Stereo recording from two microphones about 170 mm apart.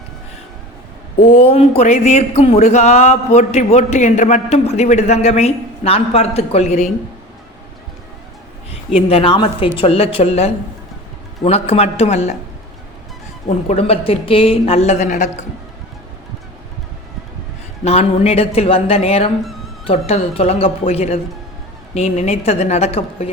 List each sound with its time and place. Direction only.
1.4 s speech: 35° left (ahead or behind)
9.0 s speech: 35° left (ahead or behind)
13.7 s speech: 35° left (ahead or behind)
17.8 s speech: 40° left (ahead or behind)